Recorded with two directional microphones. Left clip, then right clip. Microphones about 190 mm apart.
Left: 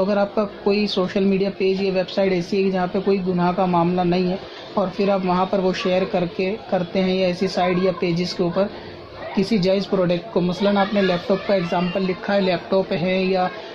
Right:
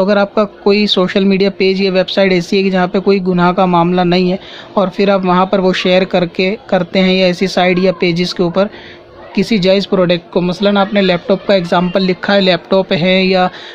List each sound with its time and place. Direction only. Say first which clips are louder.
0.0 s speech: right 8 dB; 35° right (ahead or behind)